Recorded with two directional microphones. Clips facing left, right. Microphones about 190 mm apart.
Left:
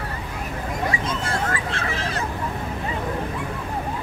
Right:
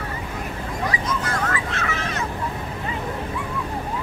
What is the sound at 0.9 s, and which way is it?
Vehicle, 30° left (ahead or behind).